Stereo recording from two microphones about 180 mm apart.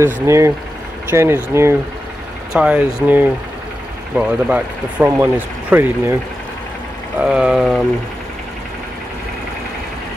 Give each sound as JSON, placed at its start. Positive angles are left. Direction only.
{"t": 0.0, "sound": "speech", "side_deg": -15}
{"t": 4.3, "sound": "speech", "side_deg": -5}
{"t": 7.2, "sound": "speech", "side_deg": -5}